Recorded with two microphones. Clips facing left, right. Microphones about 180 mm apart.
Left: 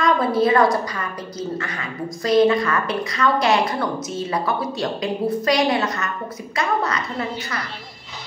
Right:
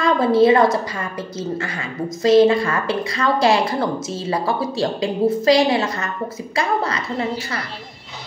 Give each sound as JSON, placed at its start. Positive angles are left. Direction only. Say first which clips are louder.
{"t": 0.0, "sound": "a woman's voice", "louder": "right 4 dB", "side_deg": -25}